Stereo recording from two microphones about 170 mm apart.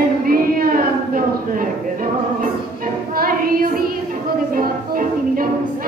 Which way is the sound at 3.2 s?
55° right (ahead or behind).